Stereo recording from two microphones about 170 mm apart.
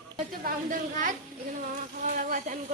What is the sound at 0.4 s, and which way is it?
Speech, 50° right (ahead or behind).